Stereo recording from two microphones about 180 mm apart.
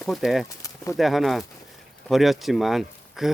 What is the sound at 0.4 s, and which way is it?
Bird, 15° left (ahead or behind).